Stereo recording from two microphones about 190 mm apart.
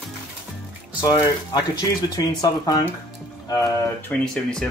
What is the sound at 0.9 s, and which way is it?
Speech, 20° left (ahead or behind).